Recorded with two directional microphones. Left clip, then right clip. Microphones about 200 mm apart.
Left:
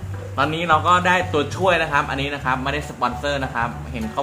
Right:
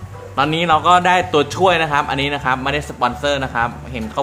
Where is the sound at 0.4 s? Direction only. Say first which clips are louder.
Right 3 dB; 55° right (ahead or behind).